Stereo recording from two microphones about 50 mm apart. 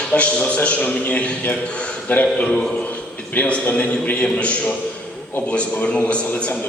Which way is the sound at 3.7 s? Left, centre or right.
Left.